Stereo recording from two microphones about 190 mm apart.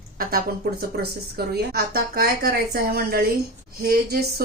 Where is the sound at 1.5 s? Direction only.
55° right (ahead or behind).